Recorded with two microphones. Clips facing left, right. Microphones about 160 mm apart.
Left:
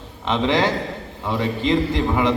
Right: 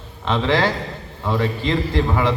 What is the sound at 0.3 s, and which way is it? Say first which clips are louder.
A man's voice: even; 20° left (ahead or behind).